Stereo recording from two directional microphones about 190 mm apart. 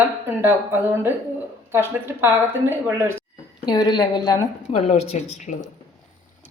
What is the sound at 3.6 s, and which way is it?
A woman's voice, 20° left (ahead or behind).